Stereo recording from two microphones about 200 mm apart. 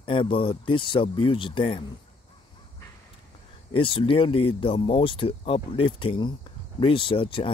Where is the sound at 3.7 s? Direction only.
25° left (ahead or behind).